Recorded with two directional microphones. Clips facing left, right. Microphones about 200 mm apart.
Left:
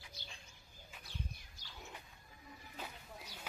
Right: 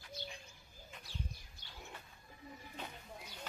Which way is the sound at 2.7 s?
5° left (ahead or behind).